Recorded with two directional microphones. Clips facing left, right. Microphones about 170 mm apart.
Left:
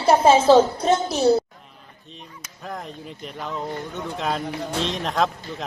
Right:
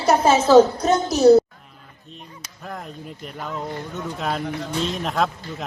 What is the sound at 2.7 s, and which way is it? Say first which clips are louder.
Speech: even; centre (ahead or behind).